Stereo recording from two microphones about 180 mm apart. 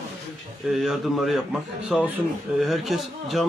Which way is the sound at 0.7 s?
Centre (ahead or behind).